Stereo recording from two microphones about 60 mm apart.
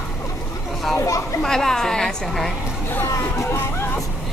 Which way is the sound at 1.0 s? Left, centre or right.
Left.